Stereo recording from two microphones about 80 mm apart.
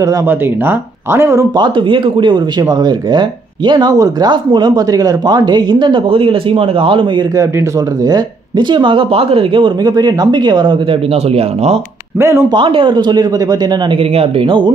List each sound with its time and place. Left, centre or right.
0.3 s speech: right
1.5 s speech: right
2.6 s speech: right
4.3 s speech: right
6.5 s speech: right
7.3 s speech: right
8.5 s speech: right
12.2 s speech: right
12.4 s speech: right
14.4 s speech: right